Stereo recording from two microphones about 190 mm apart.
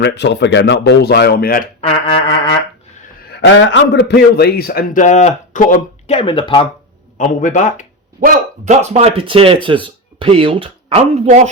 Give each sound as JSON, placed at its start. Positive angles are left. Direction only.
{"t": 0.0, "sound": "speech", "side_deg": 65}
{"t": 2.0, "sound": "music", "side_deg": 30}
{"t": 3.2, "sound": "a man's voice", "side_deg": 65}
{"t": 7.2, "sound": "speech", "side_deg": 40}
{"t": 8.2, "sound": "speech", "side_deg": -40}